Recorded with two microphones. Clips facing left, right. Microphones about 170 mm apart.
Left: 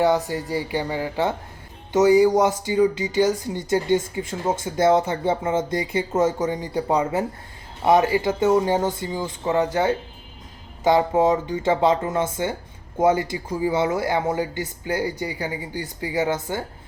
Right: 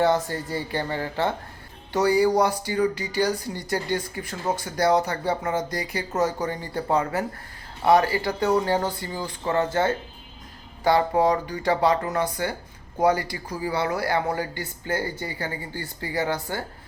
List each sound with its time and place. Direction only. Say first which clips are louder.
0.3 s speech: left 3 dB; 15° left (ahead or behind)